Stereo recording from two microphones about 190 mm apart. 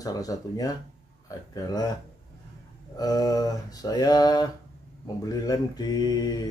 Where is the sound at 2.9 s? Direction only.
20° left (ahead or behind).